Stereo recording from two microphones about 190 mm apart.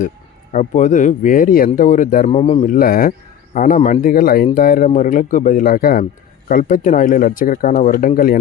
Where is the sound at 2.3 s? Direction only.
30° left (ahead or behind).